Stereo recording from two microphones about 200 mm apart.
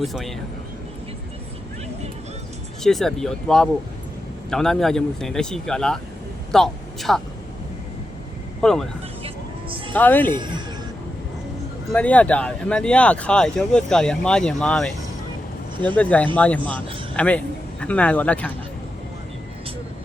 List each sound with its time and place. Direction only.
0.0 s speech: centre (ahead or behind)
2.8 s a woman's voice: centre (ahead or behind)
8.6 s speech: centre (ahead or behind)
9.2 s vehicle: 25° right (ahead or behind)
9.9 s speech: 10° left (ahead or behind)
11.9 s speech: 5° left (ahead or behind)
16.0 s speech: 5° left (ahead or behind)